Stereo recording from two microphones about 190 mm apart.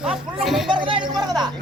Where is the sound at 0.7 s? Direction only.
25° right (ahead or behind).